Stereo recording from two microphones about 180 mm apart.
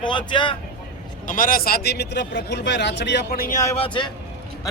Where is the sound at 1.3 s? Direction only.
50° left (ahead or behind).